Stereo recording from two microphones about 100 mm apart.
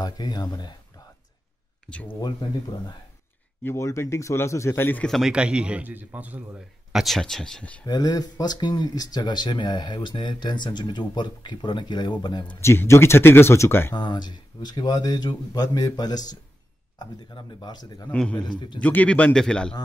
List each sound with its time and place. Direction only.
0.0 s speech: 40° left (ahead or behind)
1.9 s speech: 15° left (ahead or behind)
2.4 s speech: 45° left (ahead or behind)
3.6 s speech: 30° left (ahead or behind)
5.0 s speech: centre (ahead or behind)
5.3 s a man's voice: 10° right (ahead or behind)
6.9 s speech: centre (ahead or behind)
7.8 s speech: 40° left (ahead or behind)
12.5 s speech: 25° left (ahead or behind)
13.9 s speech: 50° left (ahead or behind)
18.1 s speech: 10° left (ahead or behind)